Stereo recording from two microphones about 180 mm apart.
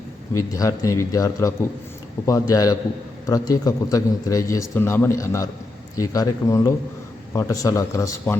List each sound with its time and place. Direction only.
0.3 s a man's voice: 20° left (ahead or behind)